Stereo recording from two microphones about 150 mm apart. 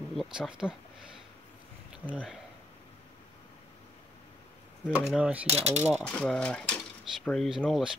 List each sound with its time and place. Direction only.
0.1 s speech: centre (ahead or behind)
1.9 s speech: 5° right (ahead or behind)
4.9 s speech: 5° right (ahead or behind)
5.5 s speech: 45° right (ahead or behind)
5.8 s speech: 10° right (ahead or behind)
6.0 s speech: 5° left (ahead or behind)